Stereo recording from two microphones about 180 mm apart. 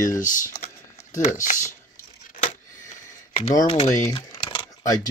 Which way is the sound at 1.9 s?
45° left (ahead or behind).